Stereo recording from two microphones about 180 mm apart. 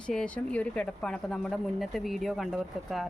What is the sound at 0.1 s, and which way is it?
Speech, 5° left (ahead or behind).